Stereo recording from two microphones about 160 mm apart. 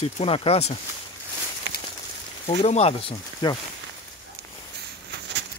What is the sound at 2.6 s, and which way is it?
Speech, 40° left (ahead or behind).